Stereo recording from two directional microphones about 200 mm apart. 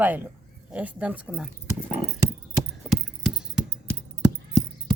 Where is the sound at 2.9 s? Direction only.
5° right (ahead or behind).